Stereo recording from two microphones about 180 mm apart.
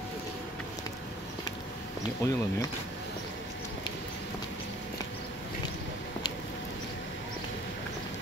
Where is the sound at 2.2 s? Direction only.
15° left (ahead or behind).